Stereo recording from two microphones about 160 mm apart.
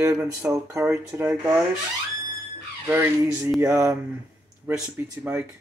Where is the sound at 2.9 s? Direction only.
15° right (ahead or behind).